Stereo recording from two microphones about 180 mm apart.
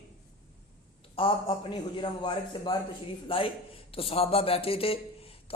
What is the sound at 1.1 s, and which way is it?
A man's voice, 30° left (ahead or behind).